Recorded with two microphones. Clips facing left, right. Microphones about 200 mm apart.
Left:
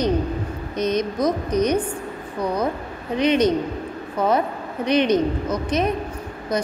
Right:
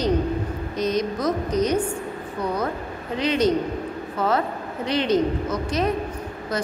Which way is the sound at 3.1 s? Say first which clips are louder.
Left 3 dB; 20° left (ahead or behind).